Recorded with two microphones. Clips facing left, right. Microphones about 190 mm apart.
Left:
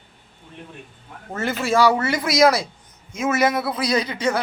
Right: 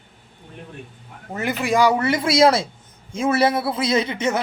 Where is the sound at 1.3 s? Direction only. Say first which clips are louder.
Even; 15° right (ahead or behind).